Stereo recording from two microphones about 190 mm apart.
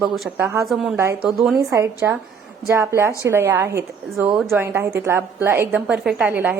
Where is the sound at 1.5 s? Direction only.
15° right (ahead or behind).